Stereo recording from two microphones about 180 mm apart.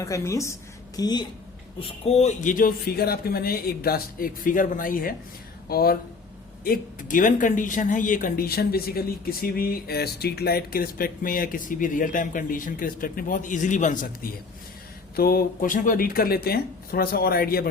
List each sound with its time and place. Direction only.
0.0 s a woman's voice: 15° left (ahead or behind)
2.0 s speech: 35° left (ahead or behind)
15.1 s speech: 55° left (ahead or behind)